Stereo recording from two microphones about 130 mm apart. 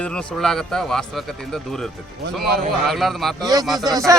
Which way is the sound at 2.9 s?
Centre (ahead or behind).